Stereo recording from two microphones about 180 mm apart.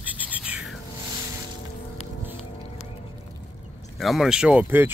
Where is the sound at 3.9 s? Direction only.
Centre (ahead or behind).